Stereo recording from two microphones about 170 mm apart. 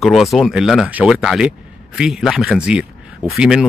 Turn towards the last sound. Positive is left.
turn(degrees=-5)  # may be behind; listen again after turning